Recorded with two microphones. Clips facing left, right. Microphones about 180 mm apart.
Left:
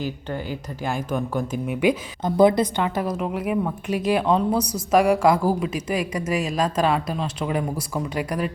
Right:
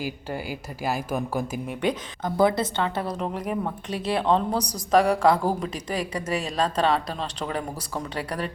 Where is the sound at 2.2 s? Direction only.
20° left (ahead or behind).